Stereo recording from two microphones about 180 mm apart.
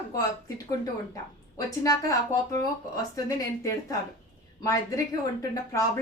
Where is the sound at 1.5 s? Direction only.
20° left (ahead or behind).